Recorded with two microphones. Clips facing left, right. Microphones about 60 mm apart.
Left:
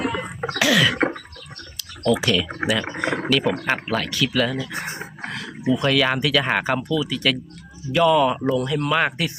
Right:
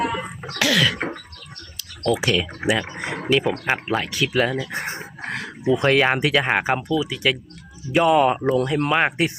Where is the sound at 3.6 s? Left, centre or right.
Centre.